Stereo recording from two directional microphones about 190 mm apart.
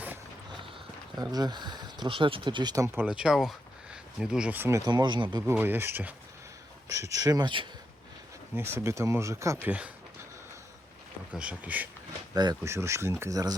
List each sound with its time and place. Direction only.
1.1 s speech: 20° right (ahead or behind)
5.5 s speech: 10° right (ahead or behind)
8.5 s speech: 15° right (ahead or behind)
11.3 s speech: 5° right (ahead or behind)
12.3 s speech: 20° right (ahead or behind)